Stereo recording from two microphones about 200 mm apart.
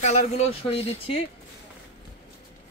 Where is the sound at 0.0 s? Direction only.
30° left (ahead or behind).